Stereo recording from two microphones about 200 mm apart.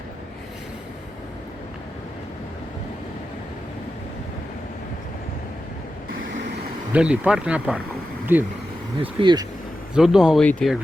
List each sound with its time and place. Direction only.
6.9 s speech: 5° right (ahead or behind)
9.1 s speech: 20° right (ahead or behind)
9.9 s speech: 5° right (ahead or behind)